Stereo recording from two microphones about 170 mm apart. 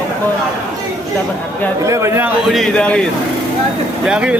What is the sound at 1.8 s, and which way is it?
Speech, 15° right (ahead or behind).